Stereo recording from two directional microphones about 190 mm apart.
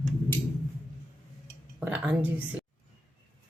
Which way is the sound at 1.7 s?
5° right (ahead or behind).